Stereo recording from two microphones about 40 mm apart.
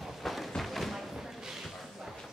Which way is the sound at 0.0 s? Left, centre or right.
Centre.